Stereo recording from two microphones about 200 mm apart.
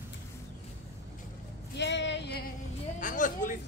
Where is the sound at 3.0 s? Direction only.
40° left (ahead or behind).